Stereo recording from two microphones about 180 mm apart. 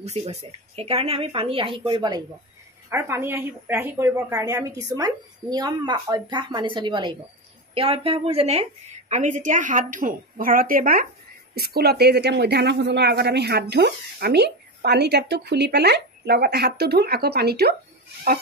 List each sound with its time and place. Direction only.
0.0 s a woman's voice: 35° right (ahead or behind)
11.5 s speech: 60° right (ahead or behind)